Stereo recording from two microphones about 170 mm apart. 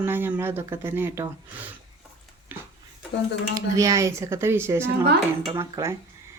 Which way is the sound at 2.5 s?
10° right (ahead or behind).